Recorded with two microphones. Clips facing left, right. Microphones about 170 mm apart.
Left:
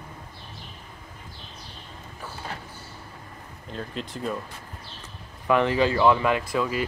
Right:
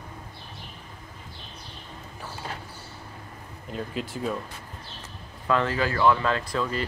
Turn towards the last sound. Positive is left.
turn(degrees=10)  # may be behind; listen again after turning